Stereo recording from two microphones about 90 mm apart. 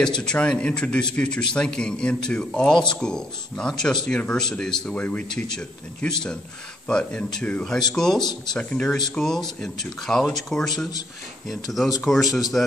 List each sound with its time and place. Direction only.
0.2 s speech: 10° left (ahead or behind)
8.2 s speech: 55° left (ahead or behind)
8.5 s speech: 10° left (ahead or behind)